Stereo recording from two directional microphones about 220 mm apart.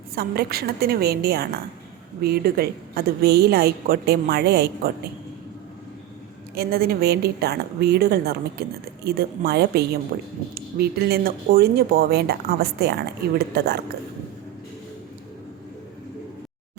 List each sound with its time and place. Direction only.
0.2 s a woman's voice: 45° right (ahead or behind)
6.6 s a woman's voice: 45° right (ahead or behind)